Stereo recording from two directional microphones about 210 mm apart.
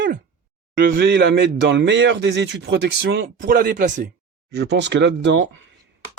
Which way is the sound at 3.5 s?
45° right (ahead or behind).